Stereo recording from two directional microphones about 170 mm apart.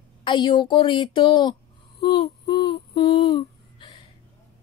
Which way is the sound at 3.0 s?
35° left (ahead or behind).